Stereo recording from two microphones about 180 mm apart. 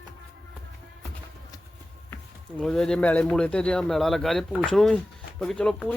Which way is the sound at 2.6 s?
5° left (ahead or behind).